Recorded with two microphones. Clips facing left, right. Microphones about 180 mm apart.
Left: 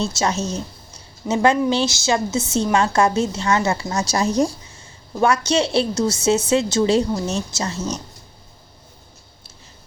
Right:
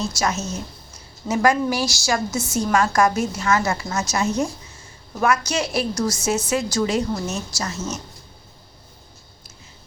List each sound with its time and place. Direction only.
0.0 s a woman's voice: 25° left (ahead or behind)